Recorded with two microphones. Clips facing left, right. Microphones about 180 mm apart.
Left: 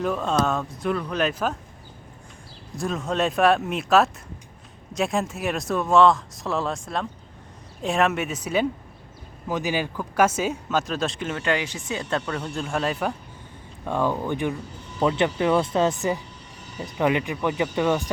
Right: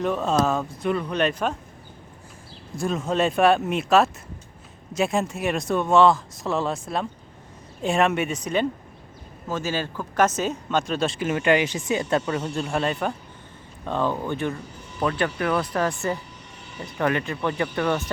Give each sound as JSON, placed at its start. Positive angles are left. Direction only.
{"t": 0.0, "sound": "a woman's voice", "side_deg": 0}
{"t": 2.7, "sound": "a woman's voice", "side_deg": 0}
{"t": 9.5, "sound": "a woman's voice", "side_deg": 15}